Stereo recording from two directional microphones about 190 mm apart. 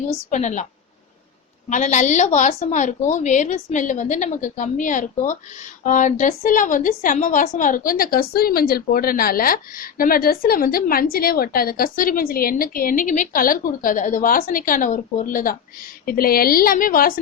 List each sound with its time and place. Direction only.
0.1 s a woman's voice: 40° left (ahead or behind)
1.7 s a woman's voice: 40° left (ahead or behind)